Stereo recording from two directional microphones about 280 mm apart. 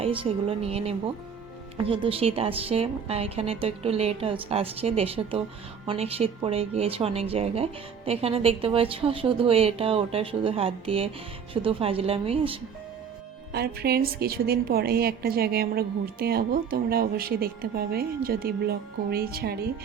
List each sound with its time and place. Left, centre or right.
0.0 s speech: centre
13.5 s a woman's voice: right